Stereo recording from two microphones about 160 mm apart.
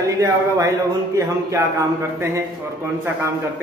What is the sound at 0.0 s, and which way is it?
A man's voice, 20° right (ahead or behind).